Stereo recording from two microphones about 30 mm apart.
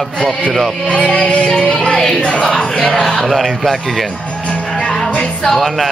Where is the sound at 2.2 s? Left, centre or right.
Left.